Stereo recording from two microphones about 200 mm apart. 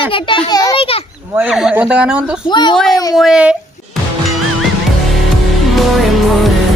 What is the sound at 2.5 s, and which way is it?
Speech, 20° left (ahead or behind).